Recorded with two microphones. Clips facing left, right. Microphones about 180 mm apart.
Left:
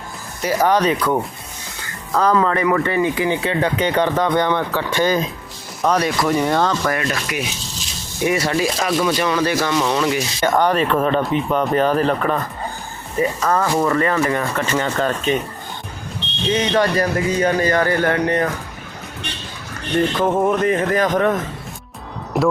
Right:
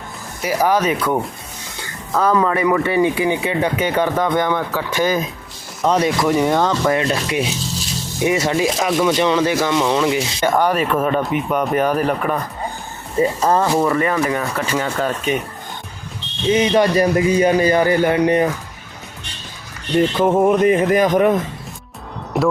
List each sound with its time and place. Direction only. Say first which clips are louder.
0.4 s speech: left 1 dB; 10° right (ahead or behind)
5.8 s rub: right 2 dB; 20° right (ahead or behind)
8.2 s speech: right 1 dB; 20° right (ahead or behind)
9.1 s rub: right 2 dB; 20° right (ahead or behind)
9.6 s speech: right 2 dB; 15° right (ahead or behind)
10.4 s speech: left 1 dB; 10° right (ahead or behind)
13.1 s rub: right 3 dB; 30° right (ahead or behind)
13.7 s speech: right 1 dB; 10° right (ahead or behind)
16.5 s speech: right 3 dB; 15° right (ahead or behind)
20.1 s speech: right 5 dB; 10° right (ahead or behind)
22.3 s a sound: even; centre (ahead or behind)